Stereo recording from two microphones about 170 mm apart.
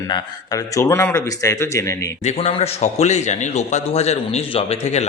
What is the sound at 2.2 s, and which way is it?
A man's voice, 40° left (ahead or behind).